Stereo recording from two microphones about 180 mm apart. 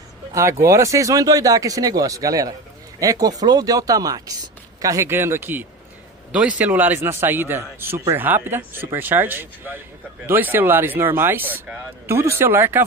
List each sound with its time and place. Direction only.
0.3 s speech: 15° right (ahead or behind)